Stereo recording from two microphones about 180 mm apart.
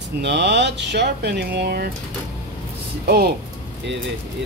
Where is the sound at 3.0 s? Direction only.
60° right (ahead or behind).